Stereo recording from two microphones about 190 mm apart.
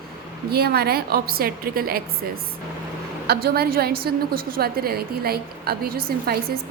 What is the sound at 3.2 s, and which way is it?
A woman's voice, 55° right (ahead or behind).